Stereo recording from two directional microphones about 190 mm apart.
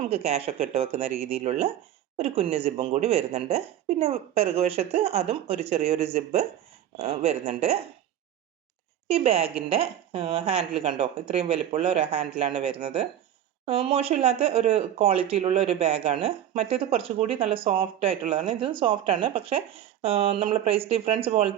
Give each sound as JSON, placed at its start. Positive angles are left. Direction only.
{"t": 0.0, "sound": "speech", "side_deg": -35}
{"t": 9.0, "sound": "a woman's voice", "side_deg": -30}